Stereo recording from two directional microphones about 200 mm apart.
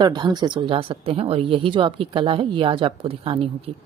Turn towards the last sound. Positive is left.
turn(degrees=-30)  # may be behind; listen again after turning